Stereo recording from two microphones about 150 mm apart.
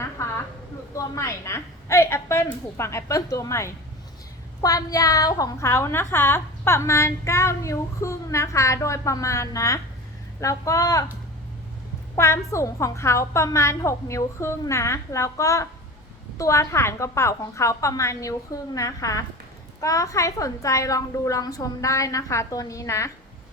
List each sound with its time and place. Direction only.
0.2 s a sound: 20° left (ahead or behind)
0.9 s a woman's voice: 20° left (ahead or behind)
12.1 s a woman's voice: 20° left (ahead or behind)